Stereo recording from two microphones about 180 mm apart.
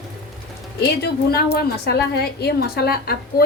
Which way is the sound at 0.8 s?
60° left (ahead or behind).